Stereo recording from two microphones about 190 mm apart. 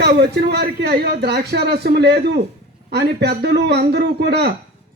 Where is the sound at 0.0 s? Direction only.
60° right (ahead or behind).